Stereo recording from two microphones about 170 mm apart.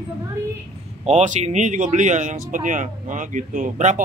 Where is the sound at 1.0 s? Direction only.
45° right (ahead or behind).